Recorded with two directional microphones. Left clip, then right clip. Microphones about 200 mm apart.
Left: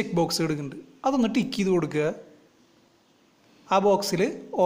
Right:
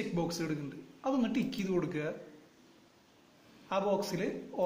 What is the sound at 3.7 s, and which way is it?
Speech, 50° left (ahead or behind).